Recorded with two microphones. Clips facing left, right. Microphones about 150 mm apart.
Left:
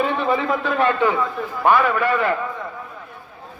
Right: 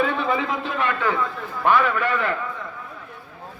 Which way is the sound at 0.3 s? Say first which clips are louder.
Left 4 dB; 45° left (ahead or behind).